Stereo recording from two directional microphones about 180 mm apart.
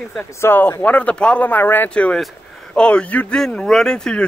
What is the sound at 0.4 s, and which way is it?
Speech, 10° left (ahead or behind).